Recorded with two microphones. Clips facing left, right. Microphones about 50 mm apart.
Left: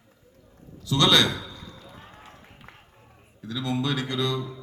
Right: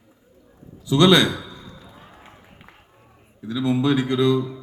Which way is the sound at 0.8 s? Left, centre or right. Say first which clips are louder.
Right 5 dB; centre.